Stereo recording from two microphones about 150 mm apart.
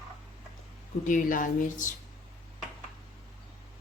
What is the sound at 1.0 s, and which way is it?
Speech, 60° left (ahead or behind).